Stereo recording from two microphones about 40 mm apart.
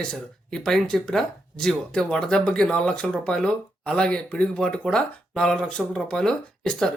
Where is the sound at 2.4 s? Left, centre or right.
Left.